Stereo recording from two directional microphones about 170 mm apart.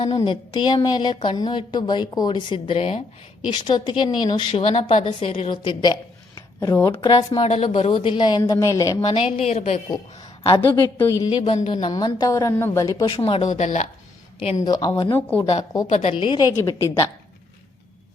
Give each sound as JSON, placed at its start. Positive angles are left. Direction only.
{"t": 0.2, "sound": "a woman's voice", "side_deg": 30}
{"t": 3.4, "sound": "a woman's voice", "side_deg": 30}
{"t": 7.4, "sound": "a woman's voice", "side_deg": 35}
{"t": 9.4, "sound": "a woman's voice", "side_deg": 40}
{"t": 10.5, "sound": "a woman's voice", "side_deg": 25}
{"t": 11.4, "sound": "a woman's voice", "side_deg": 40}
{"t": 13.1, "sound": "speech", "side_deg": 35}
{"t": 14.6, "sound": "a woman's voice", "side_deg": 25}
{"t": 15.1, "sound": "speech", "side_deg": 10}
{"t": 15.9, "sound": "a woman's voice", "side_deg": 35}